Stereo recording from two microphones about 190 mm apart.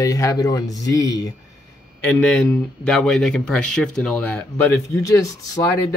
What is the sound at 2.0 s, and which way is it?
A man's voice, 5° left (ahead or behind).